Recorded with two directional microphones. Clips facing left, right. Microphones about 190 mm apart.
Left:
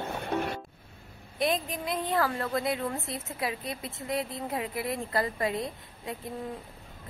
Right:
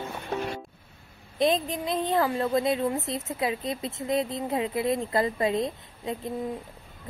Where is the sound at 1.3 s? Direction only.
20° right (ahead or behind).